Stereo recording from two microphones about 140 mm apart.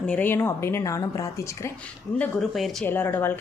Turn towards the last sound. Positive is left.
turn(degrees=15)  # may be behind; listen again after turning